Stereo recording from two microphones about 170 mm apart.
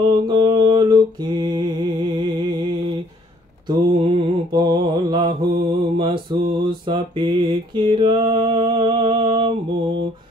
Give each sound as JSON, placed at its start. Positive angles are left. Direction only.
{"t": 0.0, "sound": "mantra", "side_deg": -30}
{"t": 3.6, "sound": "mantra", "side_deg": -25}